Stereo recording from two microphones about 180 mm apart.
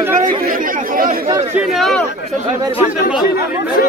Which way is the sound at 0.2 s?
50° right (ahead or behind).